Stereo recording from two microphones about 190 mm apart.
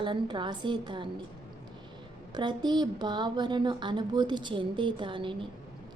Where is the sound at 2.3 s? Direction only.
25° right (ahead or behind).